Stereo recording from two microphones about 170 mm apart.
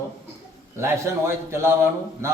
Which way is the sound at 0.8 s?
15° right (ahead or behind).